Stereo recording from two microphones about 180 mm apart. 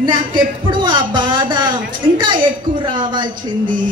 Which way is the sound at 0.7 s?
25° right (ahead or behind).